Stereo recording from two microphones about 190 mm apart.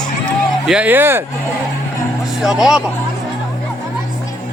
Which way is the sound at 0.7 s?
10° right (ahead or behind).